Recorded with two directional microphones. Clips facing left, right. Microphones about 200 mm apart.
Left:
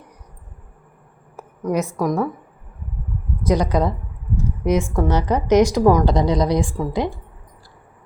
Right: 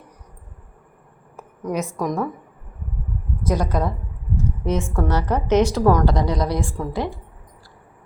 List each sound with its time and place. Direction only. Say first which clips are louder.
1.6 s a woman's voice: left 3 dB; 10° left (ahead or behind)
3.4 s a woman's voice: left 4 dB; 15° left (ahead or behind)